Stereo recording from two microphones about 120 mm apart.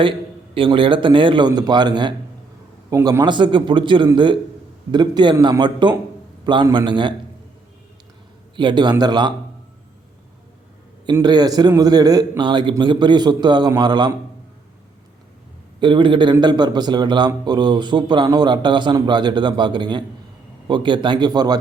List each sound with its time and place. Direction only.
0.5 s a man's voice: 45° right (ahead or behind)
8.5 s a man's voice: 40° right (ahead or behind)
11.0 s a man's voice: 35° right (ahead or behind)
15.8 s a man's voice: 40° right (ahead or behind)